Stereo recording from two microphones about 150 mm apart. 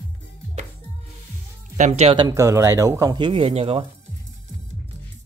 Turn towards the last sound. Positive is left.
turn(degrees=-40)  # may be behind; listen again after turning